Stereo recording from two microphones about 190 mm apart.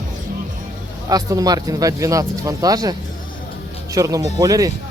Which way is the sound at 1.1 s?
20° right (ahead or behind).